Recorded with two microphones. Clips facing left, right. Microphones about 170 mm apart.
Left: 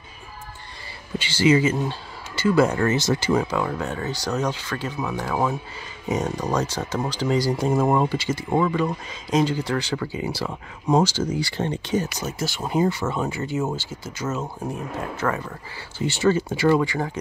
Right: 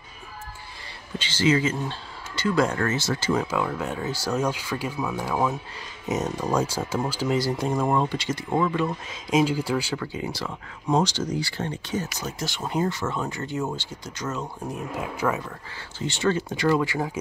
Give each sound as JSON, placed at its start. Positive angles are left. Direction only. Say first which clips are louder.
{"t": 1.1, "sound": "speech", "louder": "left 4 dB", "side_deg": 10}
{"t": 2.8, "sound": "speech", "louder": "left 4 dB", "side_deg": 20}
{"t": 3.3, "sound": "speech", "louder": "left 2 dB", "side_deg": 0}
{"t": 9.9, "sound": "speech", "louder": "left 3 dB", "side_deg": 5}
{"t": 11.5, "sound": "speech", "louder": "left 5 dB", "side_deg": 20}
{"t": 15.0, "sound": "speech", "louder": "even", "side_deg": -10}
{"t": 16.1, "sound": "speech", "louder": "left 4 dB", "side_deg": 5}